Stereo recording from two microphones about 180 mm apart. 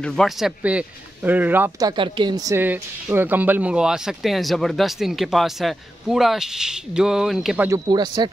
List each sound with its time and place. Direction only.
0.0 s a man's voice: centre (ahead or behind)
7.9 s speech: 25° right (ahead or behind)